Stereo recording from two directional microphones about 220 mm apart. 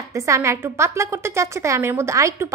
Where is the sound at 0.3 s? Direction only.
10° right (ahead or behind).